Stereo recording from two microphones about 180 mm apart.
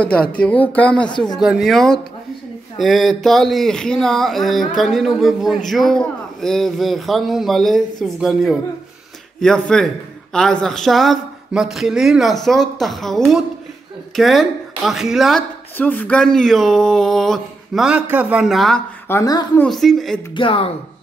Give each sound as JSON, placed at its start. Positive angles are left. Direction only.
{"t": 0.0, "sound": "speech", "side_deg": 5}
{"t": 19.0, "sound": "speech", "side_deg": 20}
{"t": 19.6, "sound": "speech", "side_deg": 0}
{"t": 20.3, "sound": "speech", "side_deg": 30}